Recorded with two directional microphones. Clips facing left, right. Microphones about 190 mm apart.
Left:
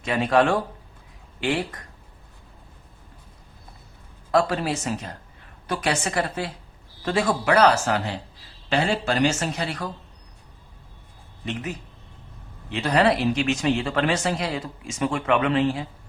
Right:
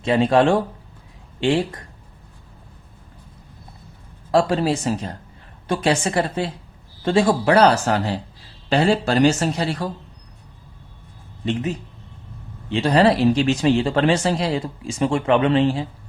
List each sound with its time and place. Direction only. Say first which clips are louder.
0.0 s speech: right 4 dB; 30° right (ahead or behind)
4.3 s speech: right 4 dB; 30° right (ahead or behind)
11.4 s speech: right 7 dB; 30° right (ahead or behind)